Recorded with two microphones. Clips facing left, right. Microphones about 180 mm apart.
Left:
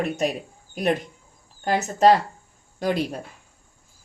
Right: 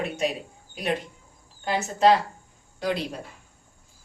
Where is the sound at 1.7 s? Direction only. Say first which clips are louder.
Left 3 dB; 45° left (ahead or behind).